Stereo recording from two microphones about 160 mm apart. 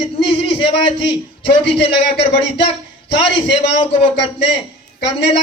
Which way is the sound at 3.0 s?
90° left.